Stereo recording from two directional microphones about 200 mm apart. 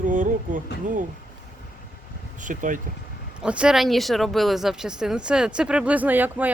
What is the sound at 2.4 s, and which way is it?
Speech, 40° right (ahead or behind).